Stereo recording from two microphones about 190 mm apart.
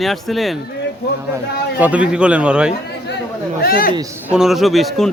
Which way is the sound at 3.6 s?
50° left (ahead or behind).